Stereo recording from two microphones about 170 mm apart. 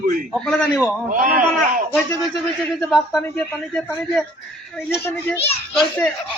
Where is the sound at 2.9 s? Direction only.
Centre (ahead or behind).